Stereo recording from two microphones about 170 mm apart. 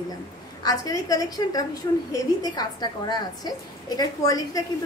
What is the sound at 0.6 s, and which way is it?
A woman's voice, 20° left (ahead or behind).